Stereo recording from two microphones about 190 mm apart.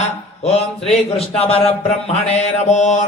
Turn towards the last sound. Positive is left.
turn(degrees=40)  # may be behind; listen again after turning